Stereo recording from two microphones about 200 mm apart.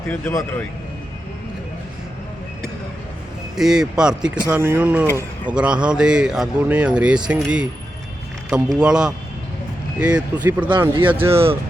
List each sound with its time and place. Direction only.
0.1 s speech: 10° left (ahead or behind)
3.5 s speech: centre (ahead or behind)
10.7 s speech: 25° right (ahead or behind)
11.1 s speech: 10° right (ahead or behind)